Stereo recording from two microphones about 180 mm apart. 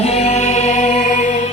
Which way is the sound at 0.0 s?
35° left (ahead or behind).